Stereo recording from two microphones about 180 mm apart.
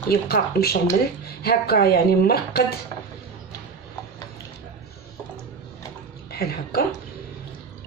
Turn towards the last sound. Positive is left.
turn(degrees=60)  # may be behind; listen again after turning